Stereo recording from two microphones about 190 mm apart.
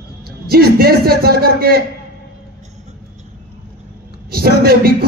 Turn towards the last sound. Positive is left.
turn(degrees=-55)  # may be behind; listen again after turning